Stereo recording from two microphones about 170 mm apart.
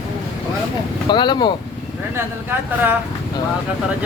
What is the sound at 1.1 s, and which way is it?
Speech, 25° left (ahead or behind).